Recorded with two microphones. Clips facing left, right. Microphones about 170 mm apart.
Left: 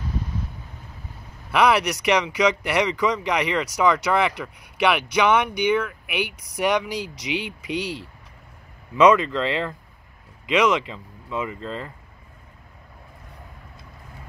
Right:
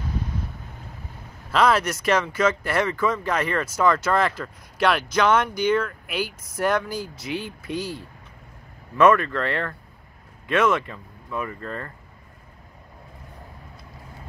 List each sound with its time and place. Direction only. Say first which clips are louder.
1.5 s speech: left 1 dB; 15° left (ahead or behind)
6.0 s speech: left 1 dB; 70° left (ahead or behind)
6.9 s speech: left 1 dB; 80° left
8.9 s speech: left 1 dB; 20° left (ahead or behind)